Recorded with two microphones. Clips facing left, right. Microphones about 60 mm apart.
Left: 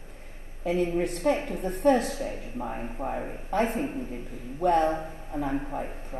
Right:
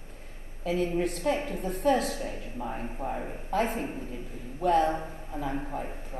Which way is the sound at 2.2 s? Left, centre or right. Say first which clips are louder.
Left 2 dB; left.